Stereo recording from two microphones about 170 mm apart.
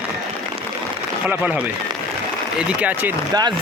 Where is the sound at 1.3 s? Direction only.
10° right (ahead or behind).